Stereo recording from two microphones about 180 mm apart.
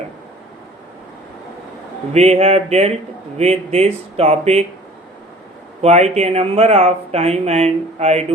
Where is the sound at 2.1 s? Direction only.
35° right (ahead or behind).